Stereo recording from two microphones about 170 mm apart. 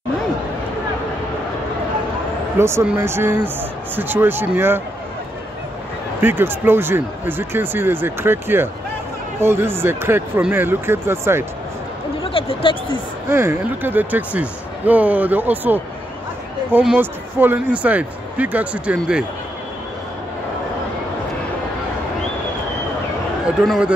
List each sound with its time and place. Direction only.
2.6 s speech: 15° right (ahead or behind)
6.2 s speech: 10° right (ahead or behind)
12.2 s a sound: 35° left (ahead or behind)
13.3 s speech: 15° right (ahead or behind)
23.6 s speech: centre (ahead or behind)